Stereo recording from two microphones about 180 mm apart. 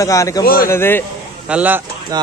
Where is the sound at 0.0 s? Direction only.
20° left (ahead or behind).